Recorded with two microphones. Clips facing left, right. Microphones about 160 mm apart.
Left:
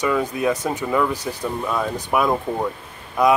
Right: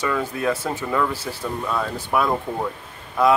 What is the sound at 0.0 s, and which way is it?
Speech, 15° left (ahead or behind).